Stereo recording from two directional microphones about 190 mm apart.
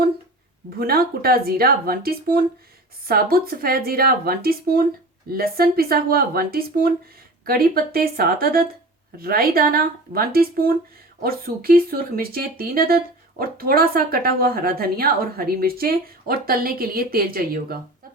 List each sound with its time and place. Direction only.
0.8 s speech: 50° right (ahead or behind)